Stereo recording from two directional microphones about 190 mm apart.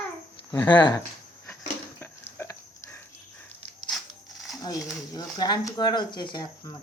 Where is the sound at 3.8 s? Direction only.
Centre (ahead or behind).